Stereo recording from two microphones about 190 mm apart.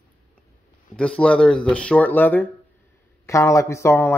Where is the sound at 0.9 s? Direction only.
5° left (ahead or behind).